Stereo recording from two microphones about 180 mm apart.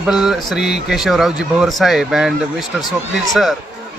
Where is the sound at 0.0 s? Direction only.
5° right (ahead or behind).